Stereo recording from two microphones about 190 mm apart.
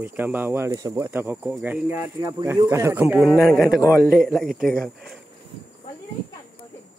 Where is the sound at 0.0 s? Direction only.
10° right (ahead or behind).